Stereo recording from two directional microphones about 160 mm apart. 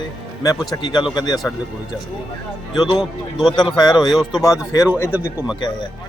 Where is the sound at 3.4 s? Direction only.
30° left (ahead or behind).